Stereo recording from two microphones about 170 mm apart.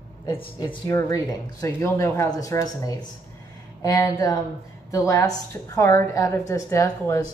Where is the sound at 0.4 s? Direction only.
30° left (ahead or behind).